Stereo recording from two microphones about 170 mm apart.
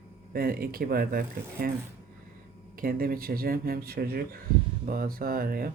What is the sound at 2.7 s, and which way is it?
Speech, 60° right (ahead or behind).